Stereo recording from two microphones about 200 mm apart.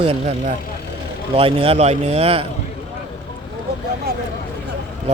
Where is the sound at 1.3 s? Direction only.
30° right (ahead or behind).